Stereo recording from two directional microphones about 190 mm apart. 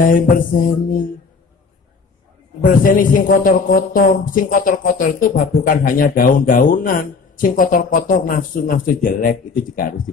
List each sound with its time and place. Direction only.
0.0 s a man's voice: 45° left (ahead or behind)
2.6 s a man's voice: 45° left (ahead or behind)